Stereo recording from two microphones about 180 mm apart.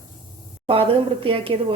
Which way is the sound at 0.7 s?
30° right (ahead or behind).